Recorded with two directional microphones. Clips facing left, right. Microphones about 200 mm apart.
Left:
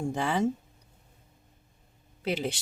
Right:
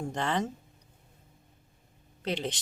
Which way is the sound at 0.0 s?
10° left (ahead or behind).